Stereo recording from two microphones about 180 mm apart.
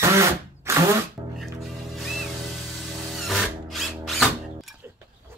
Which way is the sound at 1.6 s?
Centre (ahead or behind).